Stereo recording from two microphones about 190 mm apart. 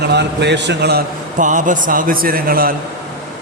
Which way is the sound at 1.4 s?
40° right (ahead or behind).